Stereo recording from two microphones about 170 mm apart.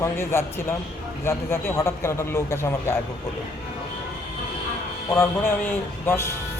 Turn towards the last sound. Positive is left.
turn(degrees=15)  # may be behind; listen again after turning